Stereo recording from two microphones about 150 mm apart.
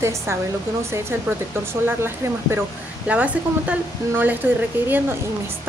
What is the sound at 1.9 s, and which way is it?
A woman's voice, 15° right (ahead or behind).